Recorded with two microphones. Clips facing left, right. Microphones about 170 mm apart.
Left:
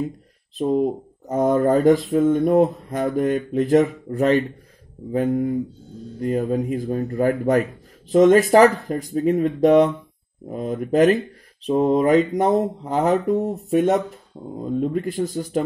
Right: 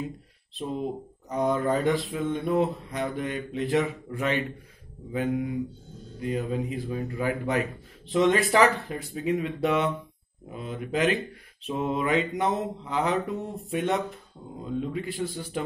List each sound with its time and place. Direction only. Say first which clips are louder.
0.6 s mantra: left 11 dB; 45° left (ahead or behind)